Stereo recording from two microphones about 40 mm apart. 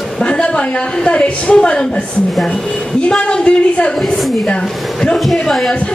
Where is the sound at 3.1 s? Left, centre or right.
Left.